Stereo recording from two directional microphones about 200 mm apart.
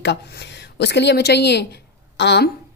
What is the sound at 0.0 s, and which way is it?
A woman's voice, 60° left (ahead or behind).